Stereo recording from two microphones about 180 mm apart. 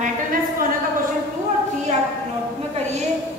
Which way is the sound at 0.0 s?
50° right (ahead or behind).